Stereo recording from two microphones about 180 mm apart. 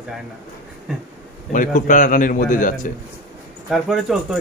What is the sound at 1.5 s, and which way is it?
A man's voice, 45° left (ahead or behind).